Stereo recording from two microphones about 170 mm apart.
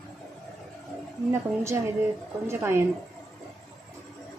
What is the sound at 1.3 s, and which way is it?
A woman's voice, 15° right (ahead or behind).